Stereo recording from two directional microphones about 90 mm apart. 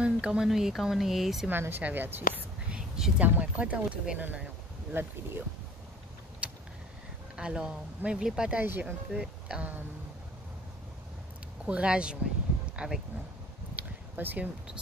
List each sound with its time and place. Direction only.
0.0 s speech: 10° right (ahead or behind)
1.5 s a woman's voice: 20° right (ahead or behind)
6.4 s vehicle: 15° right (ahead or behind)
7.3 s speech: 10° right (ahead or behind)
8.6 s a woman's voice: 20° right (ahead or behind)
9.1 s speech: 10° right (ahead or behind)
11.6 s speech: 10° right (ahead or behind)
13.7 s a sound: 20° right (ahead or behind)